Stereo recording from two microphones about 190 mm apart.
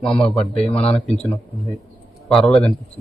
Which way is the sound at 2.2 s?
Centre (ahead or behind).